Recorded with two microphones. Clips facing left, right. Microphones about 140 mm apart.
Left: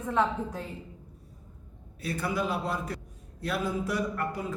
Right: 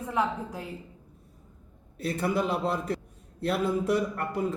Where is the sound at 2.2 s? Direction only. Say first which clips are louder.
Right 3 dB; 55° right (ahead or behind).